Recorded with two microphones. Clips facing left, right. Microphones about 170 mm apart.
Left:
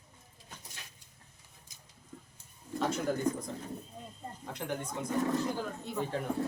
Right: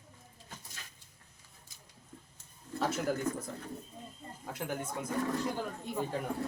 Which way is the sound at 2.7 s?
5° right (ahead or behind).